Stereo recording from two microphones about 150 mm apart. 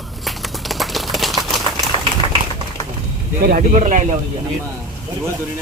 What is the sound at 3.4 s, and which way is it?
Speech, 70° right (ahead or behind).